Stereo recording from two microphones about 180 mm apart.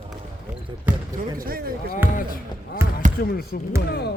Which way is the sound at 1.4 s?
55° right (ahead or behind).